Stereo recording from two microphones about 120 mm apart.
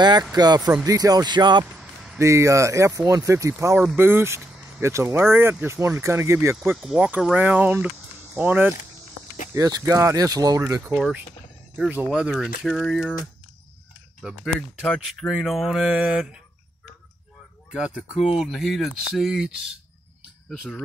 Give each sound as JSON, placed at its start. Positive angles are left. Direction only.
{"t": 0.2, "sound": "speech", "side_deg": -35}
{"t": 1.7, "sound": "vehicle", "side_deg": -5}
{"t": 2.1, "sound": "speech", "side_deg": -25}
{"t": 6.7, "sound": "speech", "side_deg": -5}
{"t": 9.5, "sound": "speech", "side_deg": -30}
{"t": 10.6, "sound": "speech", "side_deg": -20}
{"t": 11.0, "sound": "speech", "side_deg": -5}
{"t": 14.2, "sound": "speech", "side_deg": -5}
{"t": 17.6, "sound": "speech", "side_deg": -5}